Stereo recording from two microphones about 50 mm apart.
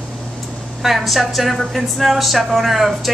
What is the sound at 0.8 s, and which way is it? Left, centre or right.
A woman's voice, centre.